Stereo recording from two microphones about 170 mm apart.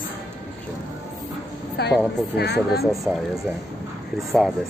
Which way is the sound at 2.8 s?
Centre (ahead or behind).